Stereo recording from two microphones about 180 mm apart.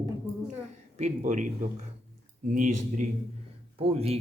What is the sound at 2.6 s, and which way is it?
Speech, 45° right (ahead or behind).